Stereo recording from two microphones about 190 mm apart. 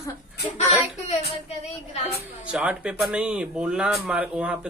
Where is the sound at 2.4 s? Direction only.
5° right (ahead or behind).